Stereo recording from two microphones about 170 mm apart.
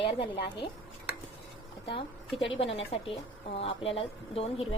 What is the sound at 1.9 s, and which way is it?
A woman's voice, 35° left (ahead or behind).